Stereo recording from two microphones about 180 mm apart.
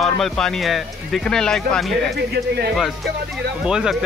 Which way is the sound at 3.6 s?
5° right (ahead or behind).